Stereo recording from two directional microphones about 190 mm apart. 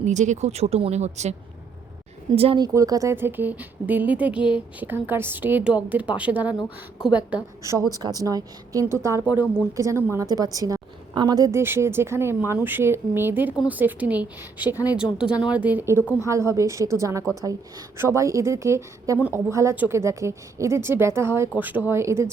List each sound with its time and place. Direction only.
0.0 s speech: 40° right (ahead or behind)
2.7 s a woman's voice: 15° right (ahead or behind)